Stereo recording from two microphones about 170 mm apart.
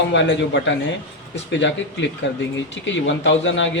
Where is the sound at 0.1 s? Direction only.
90° left.